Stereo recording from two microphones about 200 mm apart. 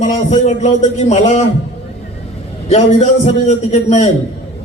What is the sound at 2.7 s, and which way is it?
A man's voice, 35° left (ahead or behind).